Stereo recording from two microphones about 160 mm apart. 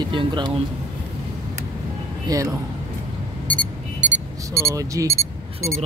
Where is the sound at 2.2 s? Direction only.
25° right (ahead or behind).